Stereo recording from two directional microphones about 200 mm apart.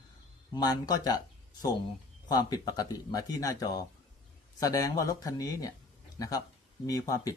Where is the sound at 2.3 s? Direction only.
20° left (ahead or behind).